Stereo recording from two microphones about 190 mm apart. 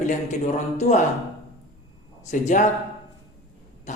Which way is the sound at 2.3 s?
40° left (ahead or behind).